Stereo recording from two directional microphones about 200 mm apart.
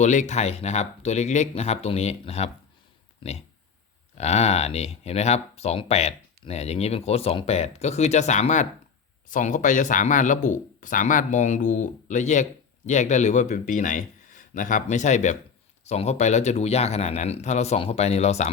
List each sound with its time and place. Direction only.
0.0 s speech: 35° left (ahead or behind)
4.2 s speech: 35° left (ahead or behind)